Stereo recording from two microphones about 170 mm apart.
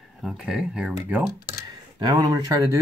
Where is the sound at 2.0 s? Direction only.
25° right (ahead or behind).